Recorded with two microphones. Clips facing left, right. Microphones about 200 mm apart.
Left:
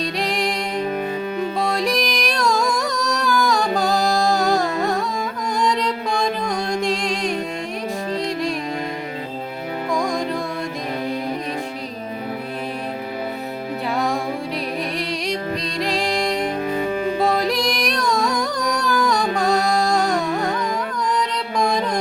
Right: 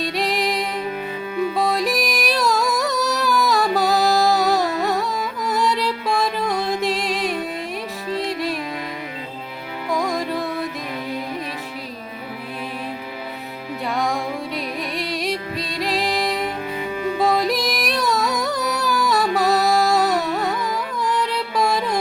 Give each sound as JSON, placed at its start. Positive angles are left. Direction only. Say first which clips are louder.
{"t": 0.0, "sound": "music", "louder": "even", "side_deg": 0}
{"t": 9.9, "sound": "music", "louder": "even", "side_deg": -5}
{"t": 13.9, "sound": "music", "louder": "even", "side_deg": 0}
{"t": 16.7, "sound": "music", "louder": "left 4 dB", "side_deg": 45}
{"t": 17.2, "sound": "music", "louder": "right 3 dB", "side_deg": 0}